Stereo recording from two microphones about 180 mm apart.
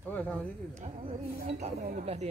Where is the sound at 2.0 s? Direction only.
40° right (ahead or behind).